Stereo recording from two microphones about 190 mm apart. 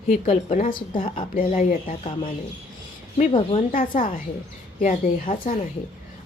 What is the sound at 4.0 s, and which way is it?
A woman's voice, 45° left (ahead or behind).